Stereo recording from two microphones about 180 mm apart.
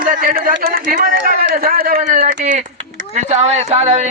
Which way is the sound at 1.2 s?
65° right (ahead or behind).